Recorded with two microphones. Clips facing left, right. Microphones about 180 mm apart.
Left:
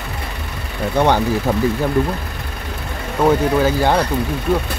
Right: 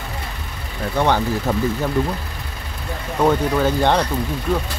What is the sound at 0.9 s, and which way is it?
Speech, 15° left (ahead or behind).